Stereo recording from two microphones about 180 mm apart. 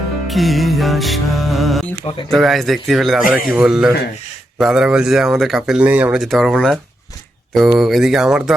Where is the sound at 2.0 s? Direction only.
30° left (ahead or behind).